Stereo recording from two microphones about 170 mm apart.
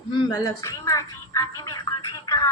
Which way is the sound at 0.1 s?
20° left (ahead or behind).